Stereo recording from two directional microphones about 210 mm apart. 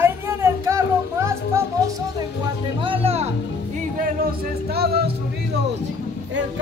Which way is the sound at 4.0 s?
45° right (ahead or behind).